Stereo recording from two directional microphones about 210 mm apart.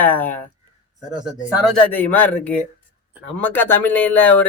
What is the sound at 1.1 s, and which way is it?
Speech, 20° right (ahead or behind).